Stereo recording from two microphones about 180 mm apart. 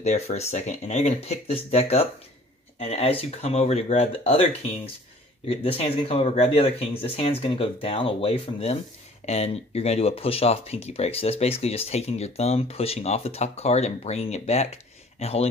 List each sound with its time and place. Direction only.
0.0 s speech: 40° left (ahead or behind)